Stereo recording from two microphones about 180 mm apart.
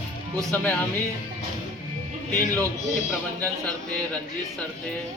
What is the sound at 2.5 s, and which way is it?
Speech, 10° left (ahead or behind).